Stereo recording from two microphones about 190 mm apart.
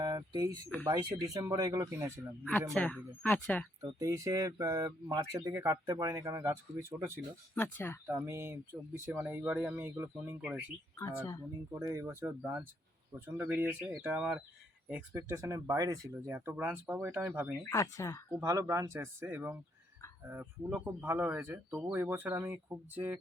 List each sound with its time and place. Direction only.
0.0 s speech: 20° right (ahead or behind)
2.7 s speech: 5° left (ahead or behind)
3.8 s speech: 20° right (ahead or behind)
7.5 s speech: 10° left (ahead or behind)
8.0 s speech: 10° right (ahead or behind)
11.7 s speech: 15° right (ahead or behind)
17.7 s speech: 15° left (ahead or behind)
18.3 s speech: 15° right (ahead or behind)